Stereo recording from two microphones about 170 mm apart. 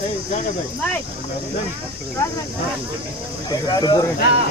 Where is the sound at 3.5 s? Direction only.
25° left (ahead or behind).